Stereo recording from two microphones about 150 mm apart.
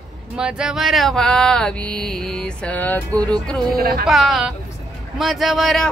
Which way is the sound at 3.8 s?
90° right.